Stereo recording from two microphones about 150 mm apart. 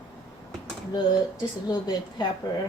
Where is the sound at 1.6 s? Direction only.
30° left (ahead or behind).